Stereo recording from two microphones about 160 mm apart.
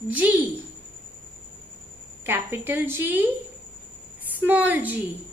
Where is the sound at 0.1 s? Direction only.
10° right (ahead or behind).